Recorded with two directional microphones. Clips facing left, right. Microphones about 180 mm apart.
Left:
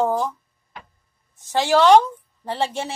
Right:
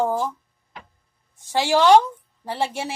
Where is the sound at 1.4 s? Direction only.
15° right (ahead or behind).